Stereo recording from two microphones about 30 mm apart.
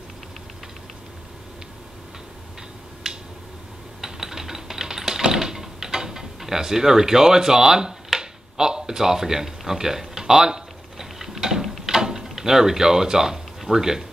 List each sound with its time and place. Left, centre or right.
3.0 s finger snapping: centre
4.0 s a sound: centre
8.2 s finger snapping: right
11.8 s drawer open or close: centre